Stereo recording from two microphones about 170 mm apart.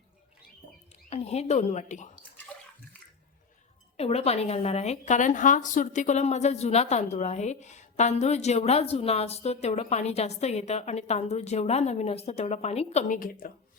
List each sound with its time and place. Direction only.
1.1 s a woman's voice: 40° left (ahead or behind)
3.9 s a woman's voice: 35° left (ahead or behind); by 13.5 s 55° left (ahead or behind)